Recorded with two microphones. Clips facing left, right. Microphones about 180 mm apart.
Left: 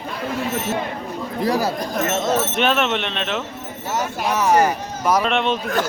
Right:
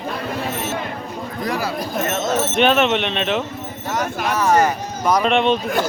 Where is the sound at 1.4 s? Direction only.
35° left (ahead or behind).